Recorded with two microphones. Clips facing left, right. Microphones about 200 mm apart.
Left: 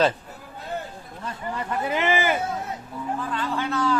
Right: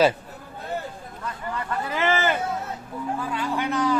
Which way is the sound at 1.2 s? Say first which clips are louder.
Left 1 dB; 20° left (ahead or behind).